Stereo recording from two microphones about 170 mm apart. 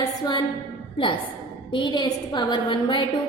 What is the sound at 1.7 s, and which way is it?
A woman's voice, 25° left (ahead or behind).